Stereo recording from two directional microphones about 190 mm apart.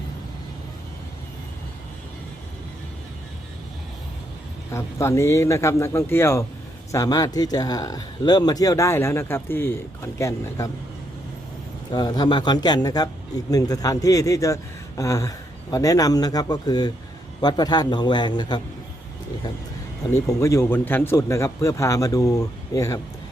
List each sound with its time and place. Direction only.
4.7 s speech: 15° left (ahead or behind)
11.9 s a man's voice: 20° left (ahead or behind)
20.1 s speech: 15° left (ahead or behind)